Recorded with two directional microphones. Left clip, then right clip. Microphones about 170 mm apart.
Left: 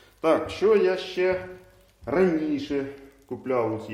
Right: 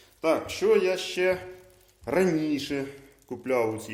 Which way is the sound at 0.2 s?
10° right (ahead or behind).